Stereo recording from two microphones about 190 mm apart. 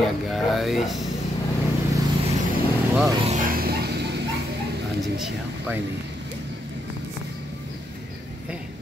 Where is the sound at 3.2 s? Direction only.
40° right (ahead or behind); by 4.2 s 60° right (ahead or behind).